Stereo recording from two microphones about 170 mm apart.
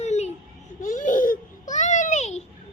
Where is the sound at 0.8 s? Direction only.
50° left (ahead or behind).